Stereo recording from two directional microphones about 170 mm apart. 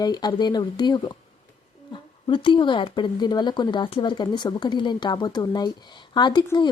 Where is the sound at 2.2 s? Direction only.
30° left (ahead or behind).